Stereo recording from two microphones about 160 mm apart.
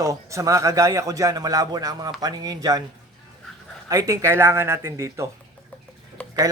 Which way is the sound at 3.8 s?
20° right (ahead or behind).